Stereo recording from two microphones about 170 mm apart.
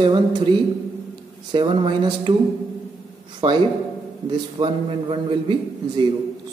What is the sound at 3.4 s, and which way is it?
A man's voice, 30° right (ahead or behind).